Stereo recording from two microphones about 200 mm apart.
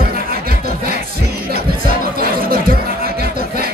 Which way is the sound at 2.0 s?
50° right (ahead or behind).